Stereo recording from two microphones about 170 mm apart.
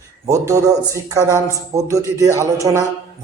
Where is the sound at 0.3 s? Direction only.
20° right (ahead or behind).